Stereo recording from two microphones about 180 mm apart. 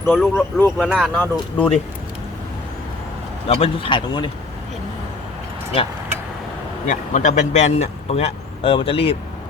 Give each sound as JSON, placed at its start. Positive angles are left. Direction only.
{"t": 0.0, "sound": "speech", "side_deg": 10}
{"t": 0.9, "sound": "speech", "side_deg": -5}
{"t": 1.1, "sound": "speech", "side_deg": 10}
{"t": 3.4, "sound": "speech", "side_deg": 35}
{"t": 6.8, "sound": "speech", "side_deg": 45}